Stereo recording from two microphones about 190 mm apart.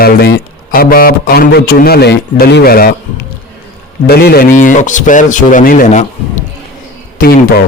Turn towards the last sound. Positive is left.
turn(degrees=50)  # may be behind; listen again after turning